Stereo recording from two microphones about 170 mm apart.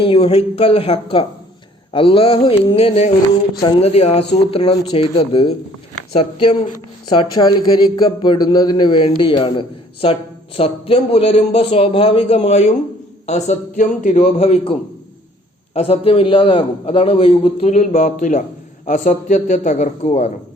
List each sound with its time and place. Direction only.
0.0 s a man's voice: 35° left (ahead or behind)